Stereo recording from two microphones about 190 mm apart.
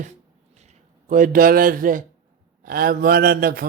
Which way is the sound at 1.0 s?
45° right (ahead or behind).